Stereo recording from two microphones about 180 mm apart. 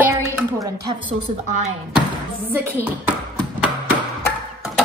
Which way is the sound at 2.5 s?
10° right (ahead or behind).